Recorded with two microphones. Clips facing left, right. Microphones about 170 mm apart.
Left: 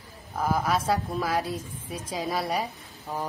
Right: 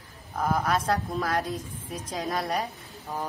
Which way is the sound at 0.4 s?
5° left (ahead or behind).